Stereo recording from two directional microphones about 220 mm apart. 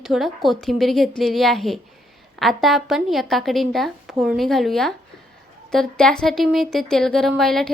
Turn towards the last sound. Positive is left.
turn(degrees=0)  # may be behind; listen again after turning